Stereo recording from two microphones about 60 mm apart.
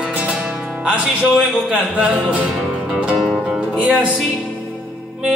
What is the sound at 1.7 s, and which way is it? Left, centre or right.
Speech, right.